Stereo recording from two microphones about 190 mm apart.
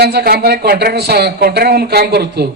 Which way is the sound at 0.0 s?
55° right (ahead or behind).